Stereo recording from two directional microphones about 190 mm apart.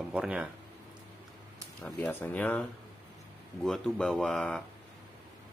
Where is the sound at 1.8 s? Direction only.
5° left (ahead or behind).